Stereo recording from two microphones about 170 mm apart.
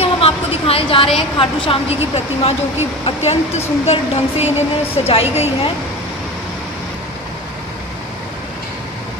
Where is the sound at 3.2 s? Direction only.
40° left (ahead or behind).